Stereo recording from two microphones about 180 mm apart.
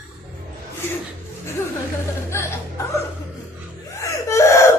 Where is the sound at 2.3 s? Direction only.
15° left (ahead or behind).